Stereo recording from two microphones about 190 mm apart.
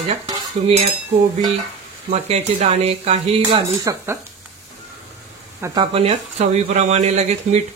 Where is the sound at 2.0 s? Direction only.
35° right (ahead or behind).